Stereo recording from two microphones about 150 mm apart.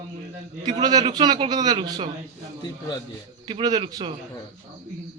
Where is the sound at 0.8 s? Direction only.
25° right (ahead or behind).